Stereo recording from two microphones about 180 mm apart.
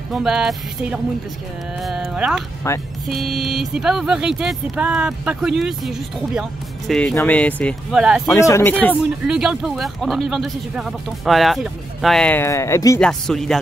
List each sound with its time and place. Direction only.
0.1 s speech: centre (ahead or behind)
2.6 s speech: 15° left (ahead or behind)
3.1 s speech: centre (ahead or behind)
7.9 s speech: 5° right (ahead or behind)
8.4 s speech: 15° left (ahead or behind)
9.3 s speech: 5° right (ahead or behind); by 13.0 s 15° left (ahead or behind)
13.0 s speech: centre (ahead or behind)